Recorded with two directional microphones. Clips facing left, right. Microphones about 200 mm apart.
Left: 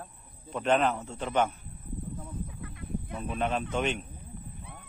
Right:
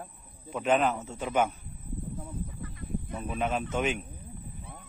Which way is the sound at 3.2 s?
5° right (ahead or behind).